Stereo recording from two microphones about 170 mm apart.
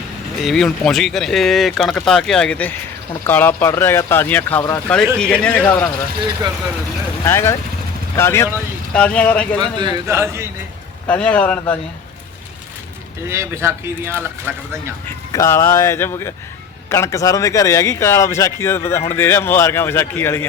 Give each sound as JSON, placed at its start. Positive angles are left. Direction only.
{"t": 0.4, "sound": "speech", "side_deg": 0}
{"t": 7.3, "sound": "speech", "side_deg": 15}
{"t": 9.6, "sound": "speech", "side_deg": -25}
{"t": 11.1, "sound": "speech", "side_deg": 10}
{"t": 13.2, "sound": "speech", "side_deg": -15}
{"t": 15.3, "sound": "speech", "side_deg": 15}